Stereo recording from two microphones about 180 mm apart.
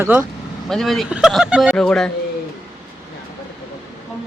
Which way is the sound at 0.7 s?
Centre (ahead or behind).